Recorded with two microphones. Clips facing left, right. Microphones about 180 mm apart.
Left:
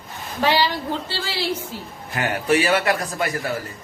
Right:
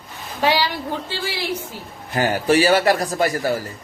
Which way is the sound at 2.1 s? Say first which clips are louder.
Right 3 dB; 35° right (ahead or behind).